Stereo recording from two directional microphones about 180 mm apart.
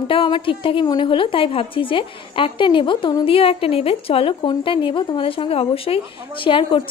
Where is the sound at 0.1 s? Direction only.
30° left (ahead or behind).